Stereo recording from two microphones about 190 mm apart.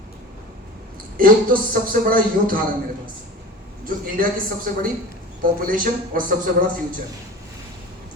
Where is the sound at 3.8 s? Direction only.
50° right (ahead or behind).